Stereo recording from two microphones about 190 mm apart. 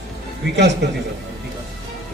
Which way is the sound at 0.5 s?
65° right (ahead or behind).